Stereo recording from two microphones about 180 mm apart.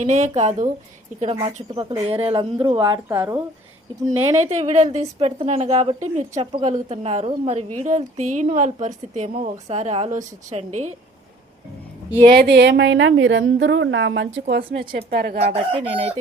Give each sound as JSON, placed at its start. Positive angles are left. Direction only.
{"t": 0.0, "sound": "a woman's voice", "side_deg": -40}
{"t": 2.9, "sound": "speech", "side_deg": -15}
{"t": 4.6, "sound": "a woman's voice", "side_deg": -40}
{"t": 12.2, "sound": "a woman's voice", "side_deg": -60}
{"t": 14.8, "sound": "a woman's voice", "side_deg": -60}
{"t": 15.5, "sound": "a woman's voice", "side_deg": -35}